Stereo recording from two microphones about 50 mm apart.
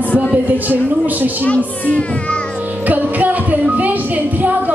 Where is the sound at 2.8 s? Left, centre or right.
Right.